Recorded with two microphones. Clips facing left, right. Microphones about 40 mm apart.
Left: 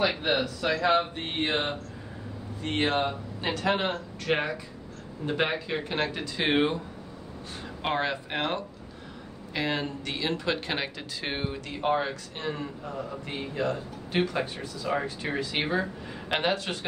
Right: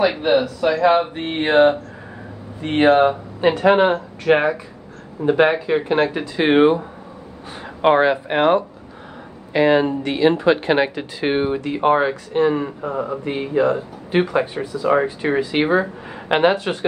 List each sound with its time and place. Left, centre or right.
0.0 s speech: centre
2.6 s speech: right
4.2 s speech: centre; by 13.2 s right
13.2 s speech: right